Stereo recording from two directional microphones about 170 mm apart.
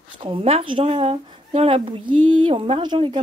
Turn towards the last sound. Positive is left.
turn(degrees=-30)  # may be behind; listen again after turning